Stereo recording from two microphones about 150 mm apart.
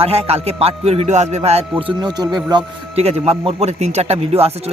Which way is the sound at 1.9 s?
30° right (ahead or behind).